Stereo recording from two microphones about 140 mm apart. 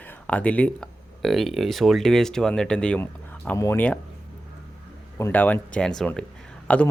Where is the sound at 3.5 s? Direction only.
20° left (ahead or behind).